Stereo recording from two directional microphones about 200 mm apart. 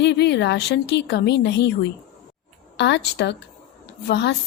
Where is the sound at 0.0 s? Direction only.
60° left (ahead or behind).